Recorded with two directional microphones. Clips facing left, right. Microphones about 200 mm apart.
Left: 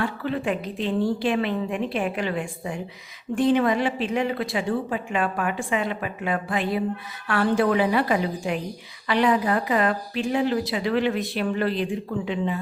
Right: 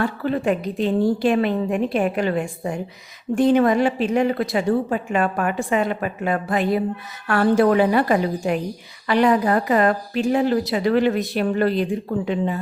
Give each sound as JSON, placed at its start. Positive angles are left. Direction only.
{"t": 0.0, "sound": "speech", "side_deg": -40}